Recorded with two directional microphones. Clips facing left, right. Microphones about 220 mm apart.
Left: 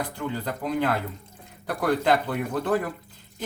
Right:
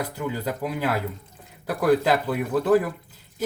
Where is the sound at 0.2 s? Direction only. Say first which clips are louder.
Right 2 dB; 5° right (ahead or behind).